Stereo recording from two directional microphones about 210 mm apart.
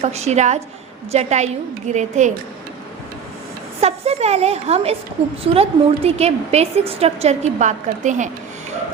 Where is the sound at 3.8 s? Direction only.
30° right (ahead or behind).